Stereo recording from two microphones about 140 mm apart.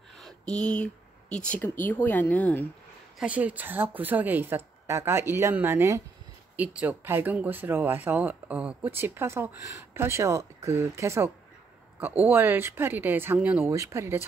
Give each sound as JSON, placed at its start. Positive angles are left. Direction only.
{"t": 0.1, "sound": "a sound", "side_deg": 5}
{"t": 1.3, "sound": "speech", "side_deg": 10}
{"t": 3.2, "sound": "speech", "side_deg": -10}
{"t": 13.7, "sound": "speech", "side_deg": -20}